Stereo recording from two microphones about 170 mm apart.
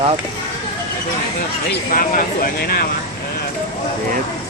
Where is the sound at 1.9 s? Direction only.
55° left (ahead or behind).